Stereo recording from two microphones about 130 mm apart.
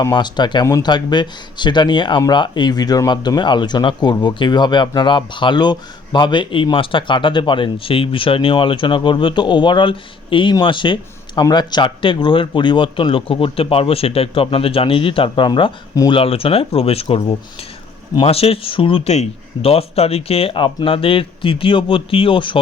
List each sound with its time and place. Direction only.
0.0 s speech: 35° left (ahead or behind)